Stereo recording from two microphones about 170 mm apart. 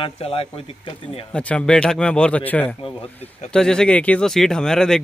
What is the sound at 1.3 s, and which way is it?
Speech, 5° left (ahead or behind).